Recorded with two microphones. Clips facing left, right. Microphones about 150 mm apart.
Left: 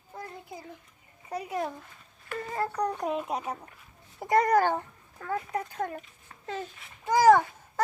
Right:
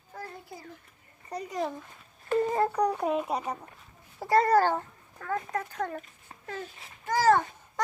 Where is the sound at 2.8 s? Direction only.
5° right (ahead or behind).